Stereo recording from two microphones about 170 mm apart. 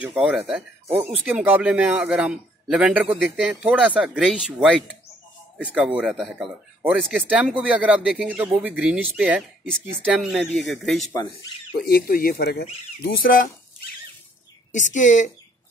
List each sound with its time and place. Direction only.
0.1 s speech: 5° right (ahead or behind)
11.8 s speech: 60° left (ahead or behind)
13.0 s speech: 55° left (ahead or behind)
15.0 s speech: 45° left (ahead or behind)